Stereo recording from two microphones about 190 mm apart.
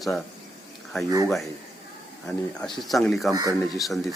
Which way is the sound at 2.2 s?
Centre (ahead or behind).